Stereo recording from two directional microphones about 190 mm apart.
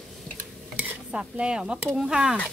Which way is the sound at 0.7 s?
10° right (ahead or behind).